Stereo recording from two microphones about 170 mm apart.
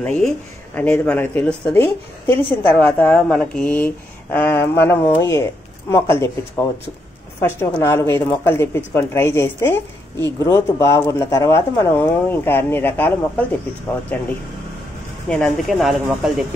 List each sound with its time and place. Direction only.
0.0 s a woman's voice: 5° left (ahead or behind)
7.4 s a woman's voice: 15° left (ahead or behind)
15.2 s speech: 5° left (ahead or behind)